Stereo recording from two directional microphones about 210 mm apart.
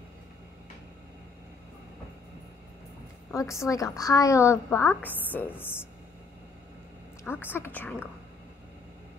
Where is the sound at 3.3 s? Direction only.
15° left (ahead or behind).